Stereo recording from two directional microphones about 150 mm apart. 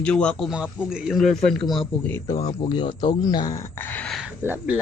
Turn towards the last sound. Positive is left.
turn(degrees=-10)  # may be behind; listen again after turning